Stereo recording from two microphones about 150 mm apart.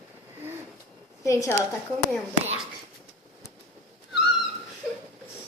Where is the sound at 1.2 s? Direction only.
20° left (ahead or behind).